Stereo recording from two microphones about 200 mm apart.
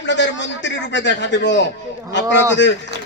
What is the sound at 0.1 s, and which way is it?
A man's voice, 65° left (ahead or behind).